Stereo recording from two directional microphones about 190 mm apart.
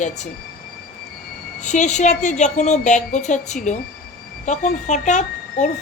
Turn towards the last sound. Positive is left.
turn(degrees=40)  # may be behind; listen again after turning